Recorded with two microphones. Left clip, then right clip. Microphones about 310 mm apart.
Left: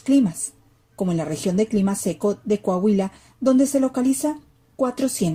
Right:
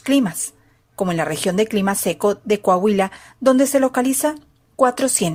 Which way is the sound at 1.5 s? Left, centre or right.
Right.